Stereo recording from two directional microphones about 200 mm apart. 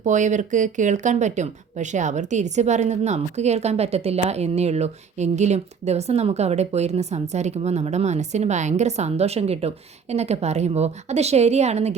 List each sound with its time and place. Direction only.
0.0 s speech: 35° right (ahead or behind)